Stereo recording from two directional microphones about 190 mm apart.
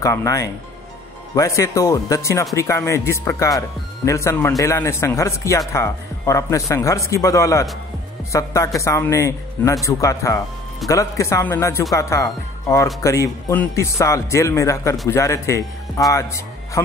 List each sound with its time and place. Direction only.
0.0 s speech: 15° left (ahead or behind)